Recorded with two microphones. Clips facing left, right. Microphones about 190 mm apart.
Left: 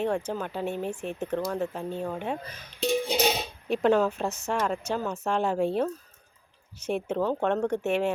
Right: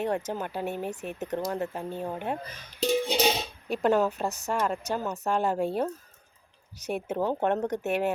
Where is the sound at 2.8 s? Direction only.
Centre (ahead or behind).